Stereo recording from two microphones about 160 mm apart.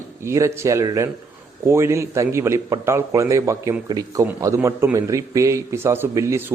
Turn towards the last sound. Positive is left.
turn(degrees=-15)  # may be behind; listen again after turning